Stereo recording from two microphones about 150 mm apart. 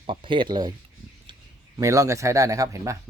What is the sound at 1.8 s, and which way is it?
Speech, 20° right (ahead or behind).